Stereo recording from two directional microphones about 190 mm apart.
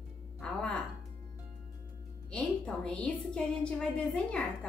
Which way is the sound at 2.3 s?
5° left (ahead or behind).